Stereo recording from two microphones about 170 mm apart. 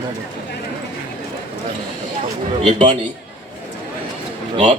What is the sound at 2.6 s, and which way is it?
Speech, 35° right (ahead or behind).